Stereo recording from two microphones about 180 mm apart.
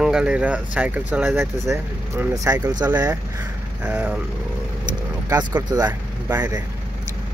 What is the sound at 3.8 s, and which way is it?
Speech, 5° right (ahead or behind).